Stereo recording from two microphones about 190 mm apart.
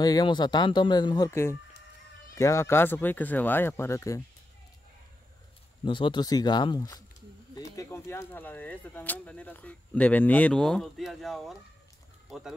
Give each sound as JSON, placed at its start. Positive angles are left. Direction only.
{"t": 0.0, "sound": "speech", "side_deg": 20}
{"t": 5.9, "sound": "speech", "side_deg": 25}